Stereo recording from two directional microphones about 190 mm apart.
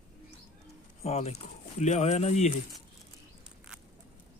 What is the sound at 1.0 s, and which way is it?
Speech, 35° left (ahead or behind).